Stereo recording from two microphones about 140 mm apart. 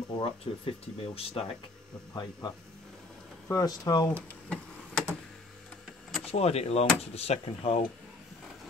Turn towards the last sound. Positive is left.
turn(degrees=45)  # may be behind; listen again after turning